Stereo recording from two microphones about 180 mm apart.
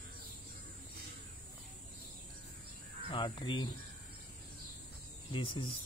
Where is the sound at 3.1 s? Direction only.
30° left (ahead or behind).